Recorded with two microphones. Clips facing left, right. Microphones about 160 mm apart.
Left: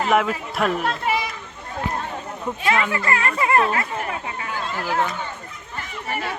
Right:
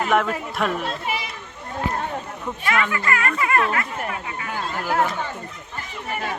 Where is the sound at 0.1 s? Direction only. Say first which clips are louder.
Left 2 dB; 5° left (ahead or behind).